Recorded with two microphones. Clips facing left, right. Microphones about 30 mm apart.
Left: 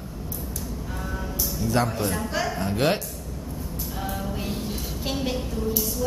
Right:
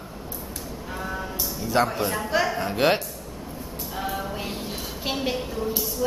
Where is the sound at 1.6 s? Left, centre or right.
Centre.